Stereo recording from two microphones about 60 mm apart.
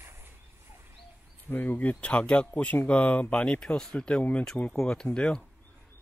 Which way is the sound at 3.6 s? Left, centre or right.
Centre.